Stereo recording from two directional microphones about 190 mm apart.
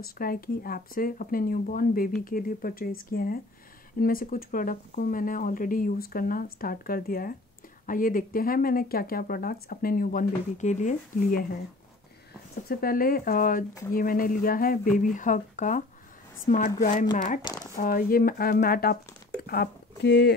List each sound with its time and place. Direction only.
0.0 s speech: 50° left (ahead or behind)
12.6 s a woman's voice: 50° left (ahead or behind)
17.7 s speech: 50° left (ahead or behind)